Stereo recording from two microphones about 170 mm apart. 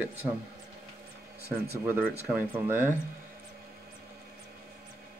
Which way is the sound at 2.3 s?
10° right (ahead or behind).